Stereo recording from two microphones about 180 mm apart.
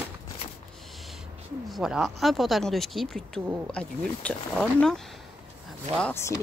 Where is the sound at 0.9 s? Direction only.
Centre (ahead or behind).